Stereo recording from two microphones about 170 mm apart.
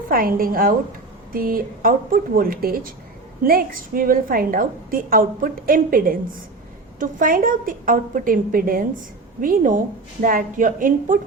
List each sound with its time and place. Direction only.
0.1 s a woman's voice: 60° right (ahead or behind)